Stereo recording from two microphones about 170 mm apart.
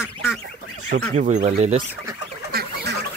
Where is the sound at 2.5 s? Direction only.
60° right (ahead or behind).